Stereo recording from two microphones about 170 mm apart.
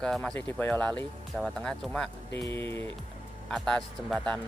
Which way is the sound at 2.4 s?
15° left (ahead or behind).